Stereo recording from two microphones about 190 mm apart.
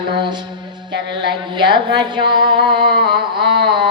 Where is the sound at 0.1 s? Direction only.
25° right (ahead or behind).